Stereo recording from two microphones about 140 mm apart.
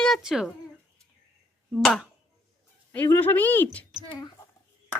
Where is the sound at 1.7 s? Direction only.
5° left (ahead or behind).